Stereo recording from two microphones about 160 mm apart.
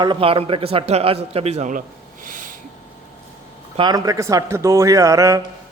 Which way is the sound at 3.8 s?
25° right (ahead or behind).